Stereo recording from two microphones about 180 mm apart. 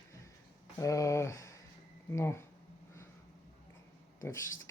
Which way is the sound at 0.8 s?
20° left (ahead or behind).